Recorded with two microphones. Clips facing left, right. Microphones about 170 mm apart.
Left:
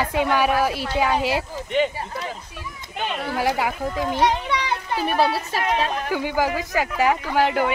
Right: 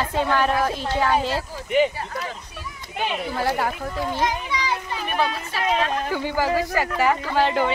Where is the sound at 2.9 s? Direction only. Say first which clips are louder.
Right 2 dB; 5° right (ahead or behind).